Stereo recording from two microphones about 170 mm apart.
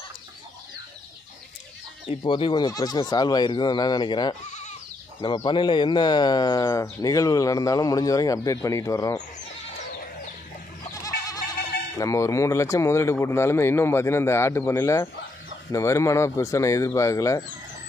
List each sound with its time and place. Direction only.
2.0 s speech: 30° left (ahead or behind)
11.0 s goat: 20° left (ahead or behind)
12.0 s speech: 20° left (ahead or behind)